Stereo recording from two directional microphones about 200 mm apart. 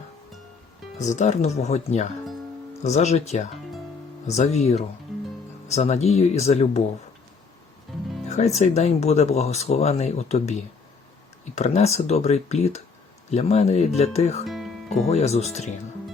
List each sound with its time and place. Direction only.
1.0 s speech: 35° left (ahead or behind)
7.9 s music: centre (ahead or behind)
8.3 s speech: 35° left (ahead or behind)
14.4 s music: centre (ahead or behind)
15.1 s speech: 35° left (ahead or behind)